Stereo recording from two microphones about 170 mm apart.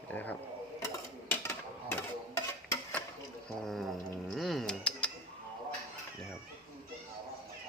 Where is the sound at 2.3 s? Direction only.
15° left (ahead or behind).